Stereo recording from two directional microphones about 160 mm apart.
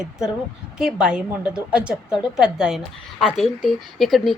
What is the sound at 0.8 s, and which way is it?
A woman's voice, 5° right (ahead or behind).